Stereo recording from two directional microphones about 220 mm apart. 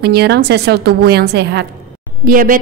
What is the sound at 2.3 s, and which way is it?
Speech, 40° right (ahead or behind).